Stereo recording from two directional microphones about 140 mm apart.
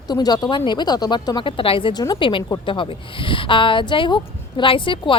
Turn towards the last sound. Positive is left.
turn(degrees=35)  # may be behind; listen again after turning